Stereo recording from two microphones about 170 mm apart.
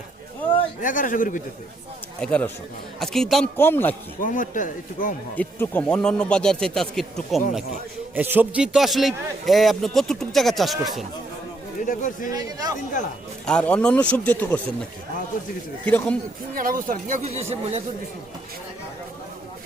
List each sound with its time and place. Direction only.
0.8 s speech: 50° left (ahead or behind)
2.2 s a man's voice: 5° left (ahead or behind)
3.6 s speech: 10° left (ahead or behind)
4.2 s speech: 50° left (ahead or behind)
5.4 s a man's voice: 10° left (ahead or behind)
8.1 s a man's voice: 10° right (ahead or behind)
11.9 s speech: 50° left (ahead or behind)
12.3 s a man's voice: 20° right (ahead or behind)
13.4 s speech: 5° left (ahead or behind)
15.8 s speech: 10° left (ahead or behind)
16.6 s speech: 55° right (ahead or behind)